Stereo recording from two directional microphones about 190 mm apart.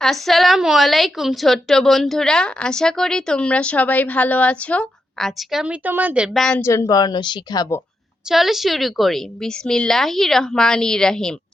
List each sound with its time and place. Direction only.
0.0 s a woman's voice: centre (ahead or behind)
6.6 s speech: 15° left (ahead or behind)
8.3 s a woman's voice: centre (ahead or behind)